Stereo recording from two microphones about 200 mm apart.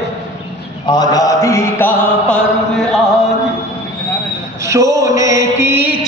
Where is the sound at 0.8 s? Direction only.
20° left (ahead or behind).